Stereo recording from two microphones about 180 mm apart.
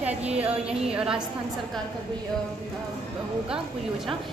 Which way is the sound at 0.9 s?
5° right (ahead or behind).